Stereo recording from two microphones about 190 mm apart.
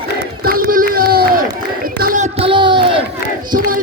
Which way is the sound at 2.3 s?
30° right (ahead or behind).